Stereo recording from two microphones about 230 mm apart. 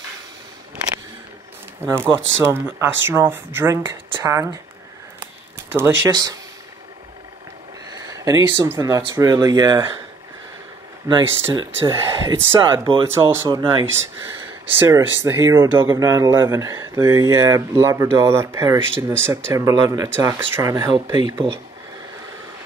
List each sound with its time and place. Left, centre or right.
1.8 s speech: centre
5.7 s speech: centre
8.1 s speech: centre
11.8 s speech: centre